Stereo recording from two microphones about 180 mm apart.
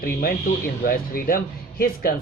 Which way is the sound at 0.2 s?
50° left (ahead or behind).